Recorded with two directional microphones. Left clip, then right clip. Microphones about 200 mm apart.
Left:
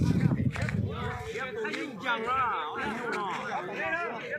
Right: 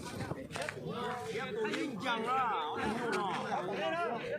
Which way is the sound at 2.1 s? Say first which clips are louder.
Left 5 dB; 5° right (ahead or behind).